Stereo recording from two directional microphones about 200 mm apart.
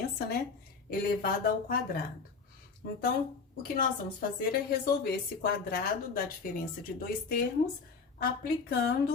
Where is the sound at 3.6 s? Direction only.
45° left (ahead or behind).